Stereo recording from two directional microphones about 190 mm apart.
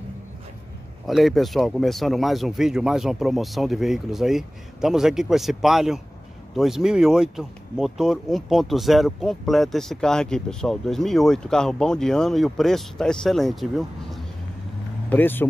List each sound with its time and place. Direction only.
1.0 s speech: centre (ahead or behind)
15.0 s speech: 10° left (ahead or behind)